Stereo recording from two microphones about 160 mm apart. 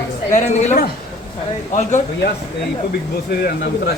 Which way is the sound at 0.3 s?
45° left (ahead or behind).